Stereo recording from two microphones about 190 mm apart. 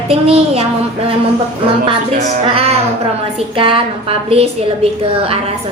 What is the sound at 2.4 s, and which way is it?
A woman's voice, 30° right (ahead or behind).